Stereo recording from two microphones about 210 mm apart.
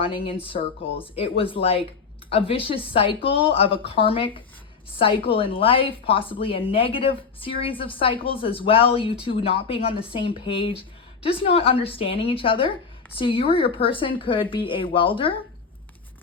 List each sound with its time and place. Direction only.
0.0 s a woman's voice: 25° left (ahead or behind)